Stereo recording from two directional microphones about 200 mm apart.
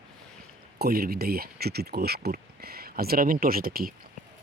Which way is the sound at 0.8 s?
50° right (ahead or behind).